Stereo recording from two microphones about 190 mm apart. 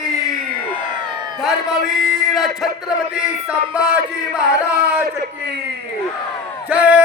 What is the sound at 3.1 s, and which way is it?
Speech, 5° right (ahead or behind).